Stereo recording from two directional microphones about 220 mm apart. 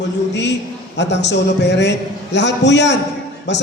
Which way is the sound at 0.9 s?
50° left (ahead or behind).